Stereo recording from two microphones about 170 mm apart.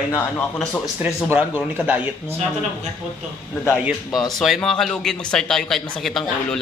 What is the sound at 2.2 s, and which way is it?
Speech, 40° right (ahead or behind).